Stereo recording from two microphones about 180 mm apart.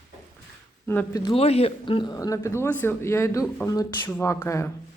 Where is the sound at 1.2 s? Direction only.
35° left (ahead or behind).